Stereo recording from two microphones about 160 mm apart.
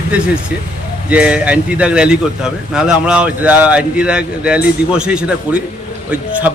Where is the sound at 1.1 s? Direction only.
5° right (ahead or behind).